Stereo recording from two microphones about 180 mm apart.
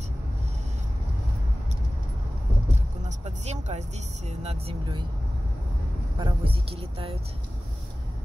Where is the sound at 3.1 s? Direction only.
40° right (ahead or behind).